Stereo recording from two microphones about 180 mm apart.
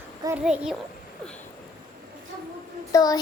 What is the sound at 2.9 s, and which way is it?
Child singing, 20° left (ahead or behind).